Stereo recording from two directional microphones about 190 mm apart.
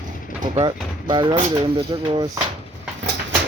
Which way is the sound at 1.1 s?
25° right (ahead or behind).